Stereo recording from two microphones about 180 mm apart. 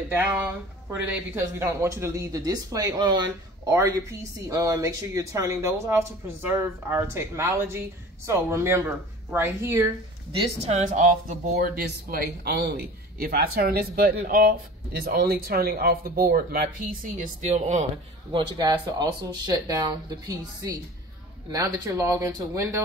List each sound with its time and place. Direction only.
0.1 s a man's voice: 10° right (ahead or behind)
10.3 s speech: 35° right (ahead or behind)
11.5 s a man's voice: 55° right (ahead or behind)
18.3 s a man's voice: 25° right (ahead or behind)